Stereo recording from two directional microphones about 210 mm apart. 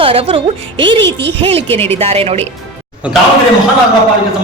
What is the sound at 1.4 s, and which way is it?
A woman's voice, 30° right (ahead or behind).